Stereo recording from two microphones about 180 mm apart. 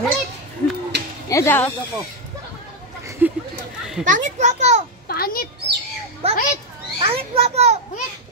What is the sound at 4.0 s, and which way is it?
Speech, 45° right (ahead or behind).